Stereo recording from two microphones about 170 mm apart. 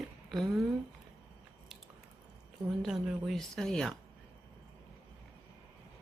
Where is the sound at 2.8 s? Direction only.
Centre (ahead or behind).